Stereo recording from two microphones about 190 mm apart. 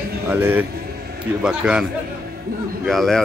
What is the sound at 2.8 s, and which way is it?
Speech, centre (ahead or behind).